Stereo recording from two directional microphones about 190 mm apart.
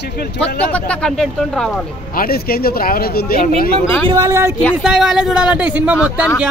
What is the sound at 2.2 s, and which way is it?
Speech, 50° left (ahead or behind).